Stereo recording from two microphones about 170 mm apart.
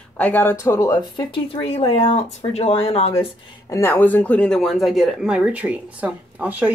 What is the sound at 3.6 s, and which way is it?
Speech, 15° left (ahead or behind).